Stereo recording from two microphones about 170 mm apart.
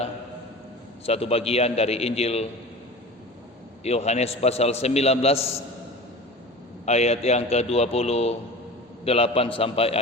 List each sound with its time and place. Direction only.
1.0 s a man's voice: 35° left (ahead or behind)
3.8 s a man's voice: 40° left (ahead or behind)
6.8 s a man's voice: 40° left (ahead or behind)